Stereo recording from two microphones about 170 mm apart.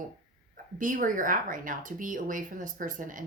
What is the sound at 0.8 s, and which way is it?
A woman's voice, 50° right (ahead or behind).